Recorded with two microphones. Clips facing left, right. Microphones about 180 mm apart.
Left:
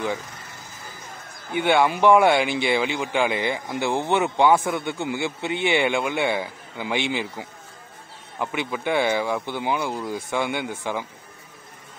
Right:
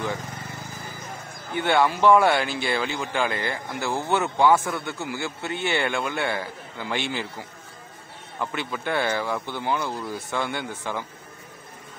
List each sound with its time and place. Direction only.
1.5 s speech: 15° left (ahead or behind)